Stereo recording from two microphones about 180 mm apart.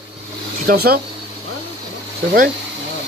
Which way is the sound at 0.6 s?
60° right (ahead or behind).